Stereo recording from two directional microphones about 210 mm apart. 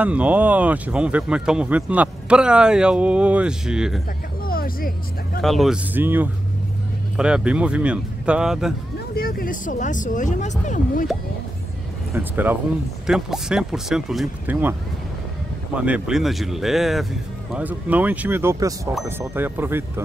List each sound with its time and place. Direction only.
0.0 s speech: 5° right (ahead or behind)
4.5 s speech: 45° left (ahead or behind)
5.4 s speech: centre (ahead or behind)
9.1 s speech: 45° left (ahead or behind)
12.1 s speech: 10° right (ahead or behind)